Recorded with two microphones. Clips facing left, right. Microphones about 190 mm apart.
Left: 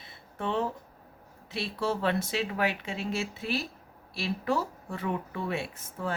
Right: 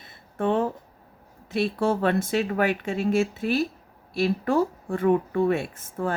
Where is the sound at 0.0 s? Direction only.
50° right (ahead or behind).